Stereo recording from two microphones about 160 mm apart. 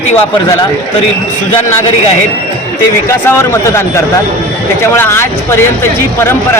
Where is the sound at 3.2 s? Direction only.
15° left (ahead or behind).